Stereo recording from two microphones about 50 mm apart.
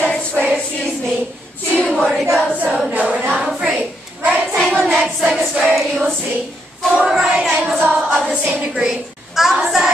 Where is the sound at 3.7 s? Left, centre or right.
Right.